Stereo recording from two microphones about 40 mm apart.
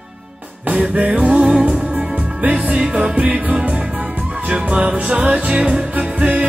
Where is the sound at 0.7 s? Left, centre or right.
Right.